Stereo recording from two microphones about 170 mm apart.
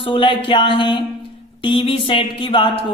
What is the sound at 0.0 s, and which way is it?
Speech, 30° left (ahead or behind).